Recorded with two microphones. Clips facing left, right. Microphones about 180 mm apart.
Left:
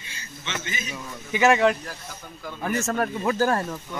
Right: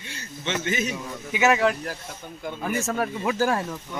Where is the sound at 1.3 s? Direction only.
5° right (ahead or behind).